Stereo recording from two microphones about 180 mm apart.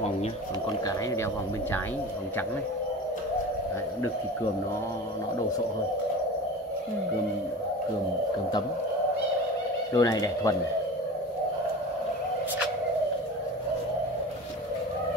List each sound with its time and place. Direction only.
9.9 s speech: 20° left (ahead or behind)